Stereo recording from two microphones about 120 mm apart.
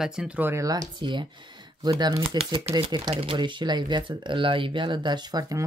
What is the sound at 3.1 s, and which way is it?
Speech, 55° right (ahead or behind).